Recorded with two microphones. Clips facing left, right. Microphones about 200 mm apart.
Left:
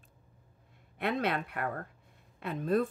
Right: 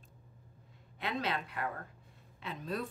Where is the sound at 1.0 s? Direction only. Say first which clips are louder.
Left 5 dB; 60° left (ahead or behind).